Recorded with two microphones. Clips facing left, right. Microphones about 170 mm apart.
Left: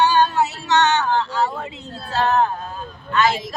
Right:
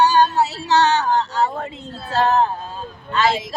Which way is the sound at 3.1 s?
30° right (ahead or behind).